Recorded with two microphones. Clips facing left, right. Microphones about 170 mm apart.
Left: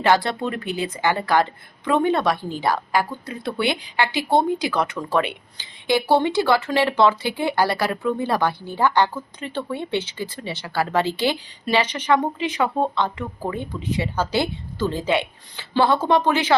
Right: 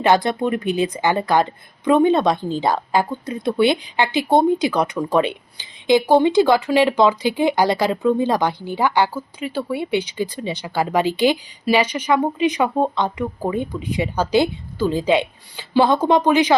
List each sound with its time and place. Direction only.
0.0 s speech: 20° right (ahead or behind)